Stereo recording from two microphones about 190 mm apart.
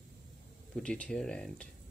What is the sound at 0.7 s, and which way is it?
Speech, 5° left (ahead or behind).